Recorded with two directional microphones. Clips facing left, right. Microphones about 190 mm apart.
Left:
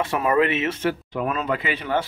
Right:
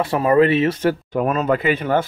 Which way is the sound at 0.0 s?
35° right (ahead or behind).